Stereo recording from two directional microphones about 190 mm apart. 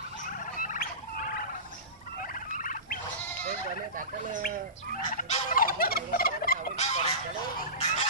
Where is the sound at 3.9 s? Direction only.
45° right (ahead or behind).